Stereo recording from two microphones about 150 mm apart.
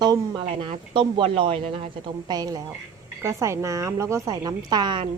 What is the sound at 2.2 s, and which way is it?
A woman's voice, 25° right (ahead or behind).